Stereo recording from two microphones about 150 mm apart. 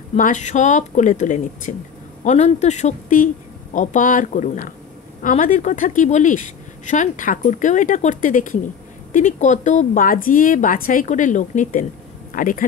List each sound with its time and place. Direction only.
0.2 s a woman's voice: 55° left (ahead or behind)